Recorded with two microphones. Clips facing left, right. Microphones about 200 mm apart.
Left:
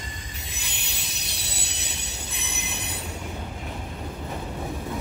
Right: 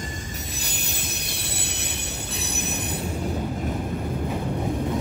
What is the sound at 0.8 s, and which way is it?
Train, 50° right (ahead or behind).